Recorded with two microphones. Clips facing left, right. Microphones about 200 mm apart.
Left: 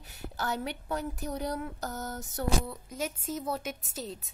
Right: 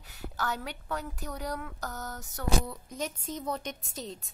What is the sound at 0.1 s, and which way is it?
Speech, 25° left (ahead or behind).